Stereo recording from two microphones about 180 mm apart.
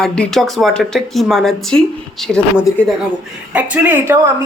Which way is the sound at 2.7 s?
20° left (ahead or behind).